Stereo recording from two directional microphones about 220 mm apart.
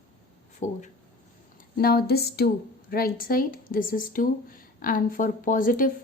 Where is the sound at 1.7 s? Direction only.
45° left (ahead or behind).